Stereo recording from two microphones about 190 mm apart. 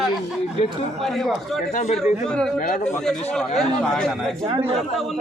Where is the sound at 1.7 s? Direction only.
35° left (ahead or behind).